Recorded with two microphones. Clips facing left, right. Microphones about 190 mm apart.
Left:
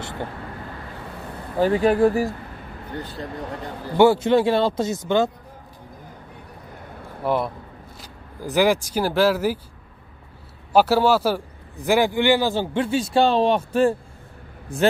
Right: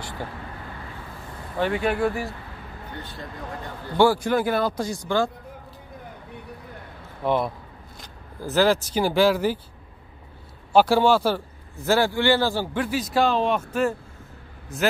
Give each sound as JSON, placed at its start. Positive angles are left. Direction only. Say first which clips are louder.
{"t": 1.6, "sound": "speech", "louder": "left 6 dB", "side_deg": 35}
{"t": 4.0, "sound": "speech", "louder": "left 4 dB", "side_deg": 25}
{"t": 7.2, "sound": "speech", "louder": "even", "side_deg": 5}
{"t": 8.0, "sound": "speech", "louder": "left 1 dB", "side_deg": 15}
{"t": 9.0, "sound": "speech", "louder": "even", "side_deg": 0}
{"t": 10.7, "sound": "a man's voice", "louder": "left 1 dB", "side_deg": 5}